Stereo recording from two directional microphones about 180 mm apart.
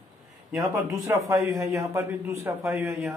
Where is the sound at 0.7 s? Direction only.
20° right (ahead or behind).